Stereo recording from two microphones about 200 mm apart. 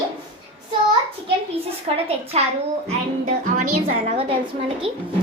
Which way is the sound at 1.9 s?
30° right (ahead or behind).